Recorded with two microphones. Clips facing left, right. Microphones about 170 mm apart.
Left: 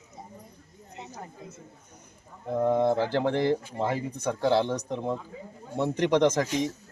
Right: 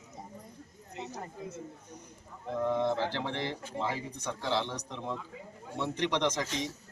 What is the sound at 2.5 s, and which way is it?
Speech, 50° left (ahead or behind).